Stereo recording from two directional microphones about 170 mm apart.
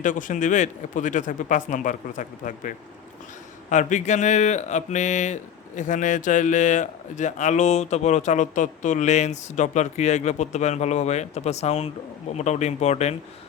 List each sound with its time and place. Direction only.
0.0 s speech: 50° left (ahead or behind)